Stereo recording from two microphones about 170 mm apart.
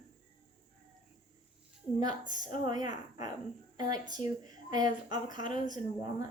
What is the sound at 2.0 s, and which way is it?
Speech, 25° right (ahead or behind).